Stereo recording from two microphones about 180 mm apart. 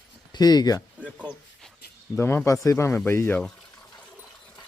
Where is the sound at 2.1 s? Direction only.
15° left (ahead or behind).